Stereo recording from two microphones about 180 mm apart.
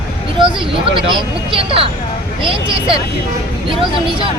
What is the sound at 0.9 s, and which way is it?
Speech, 30° right (ahead or behind).